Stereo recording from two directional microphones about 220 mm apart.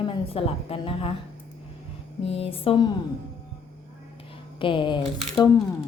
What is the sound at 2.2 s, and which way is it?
Speech, 25° left (ahead or behind).